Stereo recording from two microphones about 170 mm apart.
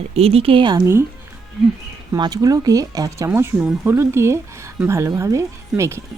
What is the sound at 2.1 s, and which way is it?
Speech, 25° right (ahead or behind).